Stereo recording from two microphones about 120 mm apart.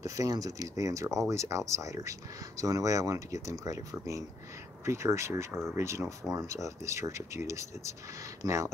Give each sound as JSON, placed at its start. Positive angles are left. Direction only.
{"t": 0.0, "sound": "speech", "side_deg": -30}